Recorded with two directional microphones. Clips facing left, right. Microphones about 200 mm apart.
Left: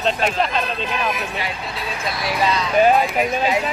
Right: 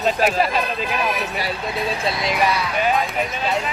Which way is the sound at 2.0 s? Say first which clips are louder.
Left 1 dB; 20° right (ahead or behind).